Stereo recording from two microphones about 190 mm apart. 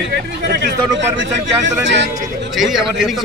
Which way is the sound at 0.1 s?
60° right (ahead or behind).